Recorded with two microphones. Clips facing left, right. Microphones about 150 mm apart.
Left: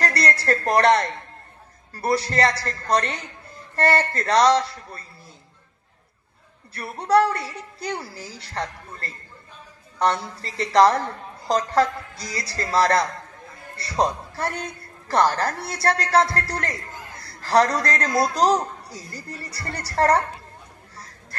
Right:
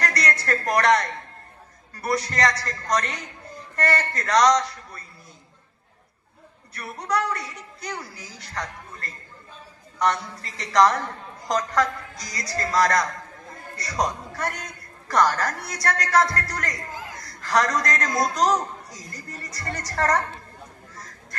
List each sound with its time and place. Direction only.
0.0 s speech: 30° left (ahead or behind)
6.7 s a woman's voice: 30° left (ahead or behind)
20.9 s honk: 30° left (ahead or behind)